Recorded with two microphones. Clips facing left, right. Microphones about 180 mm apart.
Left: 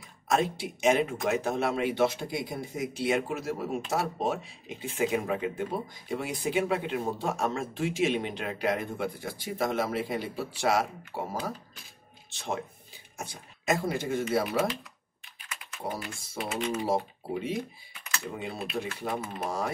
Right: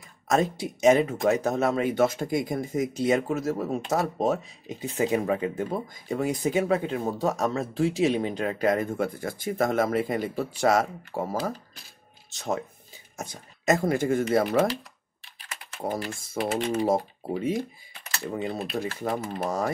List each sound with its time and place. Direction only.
0.3 s speech: 40° right (ahead or behind)
15.3 s speech: 35° right (ahead or behind)